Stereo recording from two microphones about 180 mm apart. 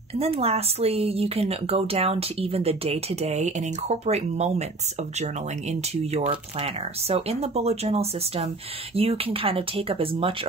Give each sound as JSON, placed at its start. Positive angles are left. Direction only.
{"t": 0.2, "sound": "speech", "side_deg": -35}